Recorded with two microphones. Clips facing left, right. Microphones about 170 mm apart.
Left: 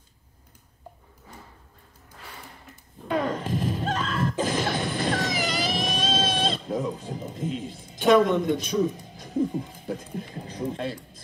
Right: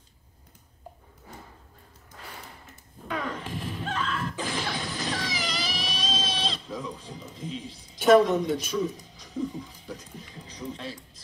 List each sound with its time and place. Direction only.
3.1 s a sound: 40° left (ahead or behind)
8.3 s speech: centre (ahead or behind)
8.9 s speech: 50° left (ahead or behind)